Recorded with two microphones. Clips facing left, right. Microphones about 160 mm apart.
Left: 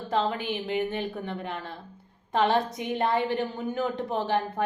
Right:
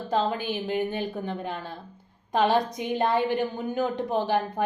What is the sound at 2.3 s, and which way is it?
A woman's voice, 15° right (ahead or behind).